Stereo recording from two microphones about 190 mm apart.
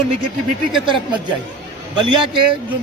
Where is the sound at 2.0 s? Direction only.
25° right (ahead or behind).